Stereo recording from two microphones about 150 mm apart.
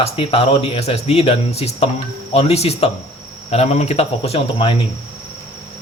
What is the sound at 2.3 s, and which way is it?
Cricket, 40° left (ahead or behind).